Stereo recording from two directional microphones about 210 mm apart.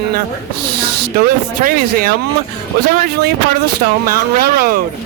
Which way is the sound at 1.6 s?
45° right (ahead or behind).